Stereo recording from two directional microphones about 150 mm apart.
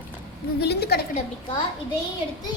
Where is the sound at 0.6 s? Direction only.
90° left.